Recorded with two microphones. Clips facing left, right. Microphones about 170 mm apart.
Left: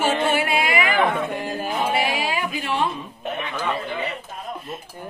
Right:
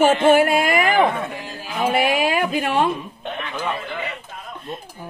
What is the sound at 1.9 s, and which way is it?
A woman's voice, 50° right (ahead or behind).